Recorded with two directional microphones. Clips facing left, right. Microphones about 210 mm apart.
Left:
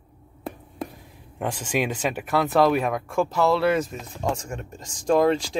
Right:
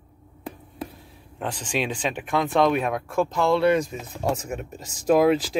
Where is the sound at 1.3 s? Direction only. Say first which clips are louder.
Left 2 dB; 10° left (ahead or behind).